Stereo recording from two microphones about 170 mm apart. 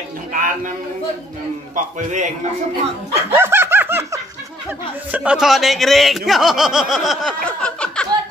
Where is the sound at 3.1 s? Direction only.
15° right (ahead or behind).